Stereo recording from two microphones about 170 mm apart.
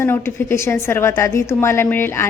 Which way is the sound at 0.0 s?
15° left (ahead or behind).